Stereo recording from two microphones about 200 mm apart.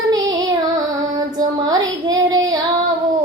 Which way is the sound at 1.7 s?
20° right (ahead or behind).